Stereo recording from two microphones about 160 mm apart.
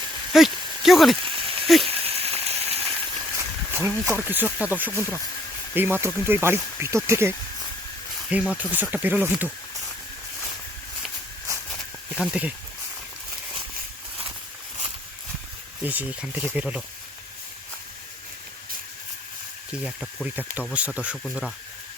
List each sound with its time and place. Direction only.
0.3 s speech: centre (ahead or behind)
1.2 s a sound: 35° right (ahead or behind)
3.3 s a sound: 15° right (ahead or behind)
4.3 s speech: 10° right (ahead or behind)
4.9 s speech: 15° left (ahead or behind)
5.7 s speech: 15° right (ahead or behind)
12.1 s speech: 5° right (ahead or behind)
15.8 s speech: 10° right (ahead or behind)
19.8 s speech: 5° right (ahead or behind)